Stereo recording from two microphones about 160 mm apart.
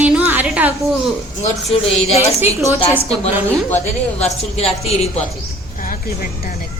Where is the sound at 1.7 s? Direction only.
40° left (ahead or behind).